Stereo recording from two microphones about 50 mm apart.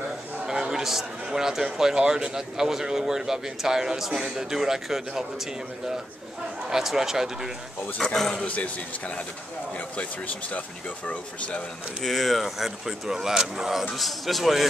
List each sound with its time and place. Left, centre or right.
0.5 s a man's voice: centre
6.7 s a man's voice: centre
8.0 s speech: centre
8.5 s speech: left
12.0 s speech: centre